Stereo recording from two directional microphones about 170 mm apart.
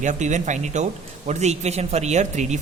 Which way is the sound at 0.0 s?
45° right (ahead or behind).